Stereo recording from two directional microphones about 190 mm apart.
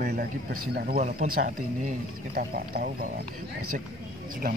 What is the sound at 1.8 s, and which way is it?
Speech, 50° right (ahead or behind).